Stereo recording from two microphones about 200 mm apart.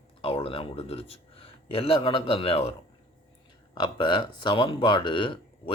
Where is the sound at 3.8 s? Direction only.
25° left (ahead or behind).